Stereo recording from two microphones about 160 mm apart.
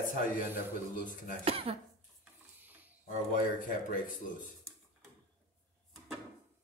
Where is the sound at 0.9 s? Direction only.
60° left (ahead or behind).